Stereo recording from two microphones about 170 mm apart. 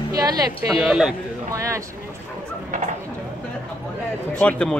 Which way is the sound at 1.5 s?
20° right (ahead or behind).